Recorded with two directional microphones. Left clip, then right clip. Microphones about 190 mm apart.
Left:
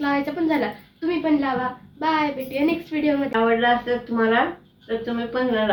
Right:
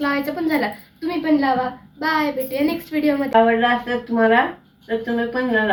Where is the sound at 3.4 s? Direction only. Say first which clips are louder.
Right 1 dB; 15° left (ahead or behind).